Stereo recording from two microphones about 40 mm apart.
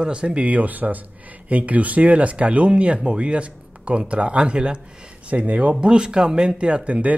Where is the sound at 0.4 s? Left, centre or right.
Right.